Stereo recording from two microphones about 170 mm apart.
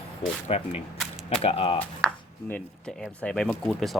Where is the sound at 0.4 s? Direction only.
40° left (ahead or behind).